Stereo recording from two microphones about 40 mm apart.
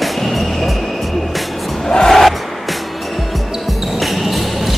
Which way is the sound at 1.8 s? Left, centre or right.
Centre.